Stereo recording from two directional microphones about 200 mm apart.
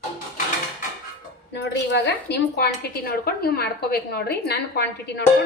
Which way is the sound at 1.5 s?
60° left (ahead or behind).